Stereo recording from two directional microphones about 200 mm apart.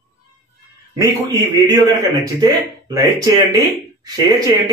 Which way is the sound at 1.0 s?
20° right (ahead or behind).